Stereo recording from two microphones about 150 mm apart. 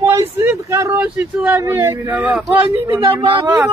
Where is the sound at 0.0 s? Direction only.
15° right (ahead or behind).